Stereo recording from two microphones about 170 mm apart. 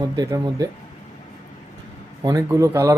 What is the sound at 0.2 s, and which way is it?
Speech, 20° right (ahead or behind).